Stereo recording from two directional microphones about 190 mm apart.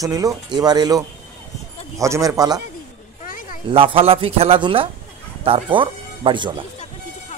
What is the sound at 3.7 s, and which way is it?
A man's voice, 30° right (ahead or behind).